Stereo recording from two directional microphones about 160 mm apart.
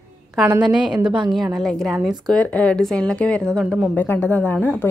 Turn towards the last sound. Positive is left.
turn(degrees=15)  # may be behind; listen again after turning